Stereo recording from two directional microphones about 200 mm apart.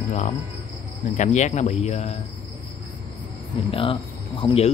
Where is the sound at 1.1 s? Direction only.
35° left (ahead or behind).